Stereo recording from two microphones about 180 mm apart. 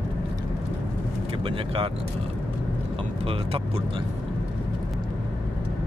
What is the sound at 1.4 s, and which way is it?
Speech, 30° right (ahead or behind).